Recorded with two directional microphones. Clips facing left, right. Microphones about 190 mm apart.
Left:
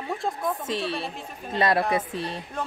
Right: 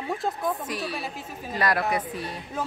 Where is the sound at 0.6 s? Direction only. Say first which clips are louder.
Left 3 dB; 25° left (ahead or behind).